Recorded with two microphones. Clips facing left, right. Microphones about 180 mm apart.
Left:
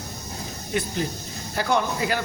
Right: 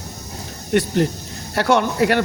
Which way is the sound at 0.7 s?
65° right (ahead or behind).